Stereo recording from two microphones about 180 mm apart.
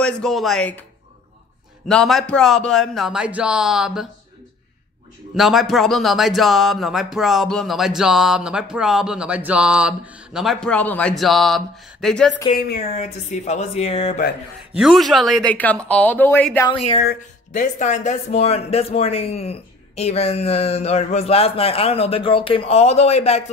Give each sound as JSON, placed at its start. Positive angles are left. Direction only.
{"t": 0.0, "sound": "speech", "side_deg": 0}
{"t": 1.9, "sound": "speech", "side_deg": 5}
{"t": 5.3, "sound": "speech", "side_deg": 0}
{"t": 12.5, "sound": "speech", "side_deg": 55}
{"t": 12.9, "sound": "a man's voice", "side_deg": 40}
{"t": 14.8, "sound": "speech", "side_deg": 0}
{"t": 16.6, "sound": "speech", "side_deg": 30}
{"t": 17.5, "sound": "a man's voice", "side_deg": 45}